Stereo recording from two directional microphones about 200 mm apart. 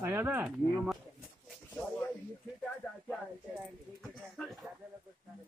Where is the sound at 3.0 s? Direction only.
Centre (ahead or behind).